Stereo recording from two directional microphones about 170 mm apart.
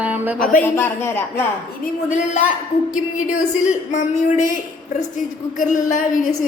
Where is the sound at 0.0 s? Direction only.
10° right (ahead or behind).